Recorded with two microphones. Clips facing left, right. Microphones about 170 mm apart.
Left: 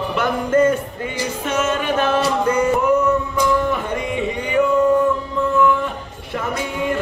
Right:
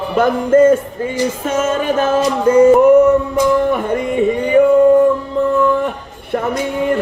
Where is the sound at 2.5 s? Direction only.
25° right (ahead or behind).